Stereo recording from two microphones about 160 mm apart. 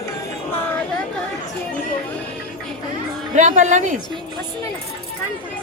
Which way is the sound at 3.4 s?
50° right (ahead or behind).